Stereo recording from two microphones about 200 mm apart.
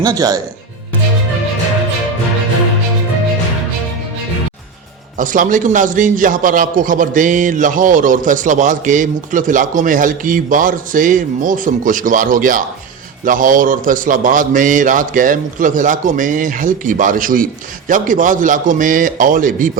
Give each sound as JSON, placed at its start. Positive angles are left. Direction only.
{"t": 0.0, "sound": "speech", "side_deg": -20}
{"t": 5.1, "sound": "a man's voice", "side_deg": -40}